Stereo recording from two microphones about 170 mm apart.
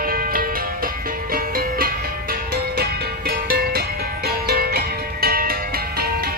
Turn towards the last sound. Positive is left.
turn(degrees=-60)  # may be behind; listen again after turning